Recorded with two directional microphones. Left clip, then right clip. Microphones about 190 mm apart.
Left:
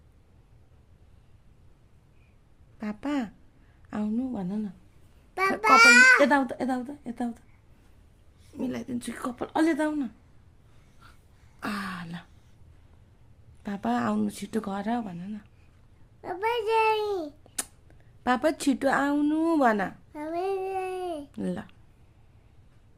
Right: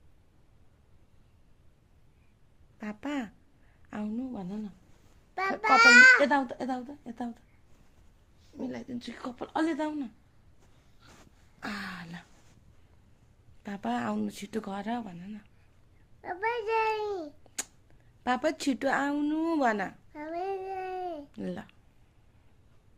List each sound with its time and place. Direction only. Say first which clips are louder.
2.7 s a child's voice: left 4 dB; 15° left (ahead or behind)
8.5 s a child's voice: left 5 dB; 35° left (ahead or behind)
11.0 s throat clearing: left 2 dB; 30° left (ahead or behind)
11.6 s a sound: left 4 dB; 30° left (ahead or behind)
13.6 s a child's voice: left 4 dB; 20° left (ahead or behind)